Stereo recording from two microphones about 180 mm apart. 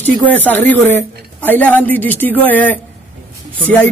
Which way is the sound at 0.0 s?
10° left (ahead or behind).